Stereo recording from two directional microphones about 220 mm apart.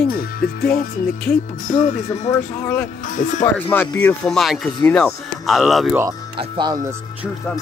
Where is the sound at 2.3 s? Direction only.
10° left (ahead or behind).